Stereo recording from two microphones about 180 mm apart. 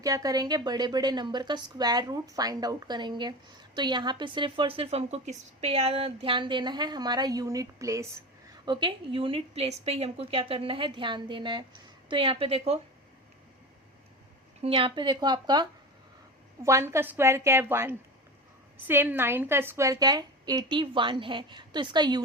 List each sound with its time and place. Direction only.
0.0 s a woman's voice: 20° right (ahead or behind)
14.6 s a woman's voice: 30° right (ahead or behind)
16.6 s a woman's voice: 15° right (ahead or behind)